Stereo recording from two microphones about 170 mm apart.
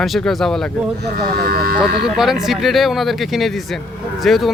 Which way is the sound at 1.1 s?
65° right (ahead or behind).